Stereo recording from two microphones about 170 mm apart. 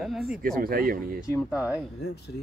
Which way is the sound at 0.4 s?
55° right (ahead or behind).